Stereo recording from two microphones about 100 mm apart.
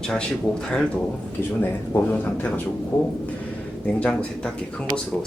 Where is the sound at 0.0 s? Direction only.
5° left (ahead or behind).